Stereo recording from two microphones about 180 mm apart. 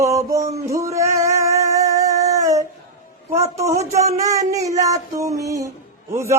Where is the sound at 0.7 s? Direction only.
15° right (ahead or behind).